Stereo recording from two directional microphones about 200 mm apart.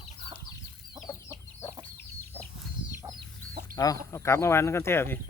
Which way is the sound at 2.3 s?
10° left (ahead or behind).